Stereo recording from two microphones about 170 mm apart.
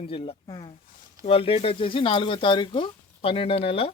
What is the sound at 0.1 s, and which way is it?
Speech, 30° left (ahead or behind).